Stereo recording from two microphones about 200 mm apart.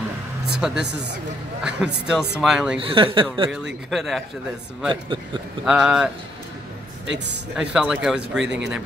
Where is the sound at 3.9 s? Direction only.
Centre (ahead or behind).